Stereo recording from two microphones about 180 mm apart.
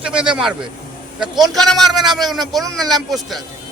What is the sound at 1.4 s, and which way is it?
A man's voice, centre (ahead or behind).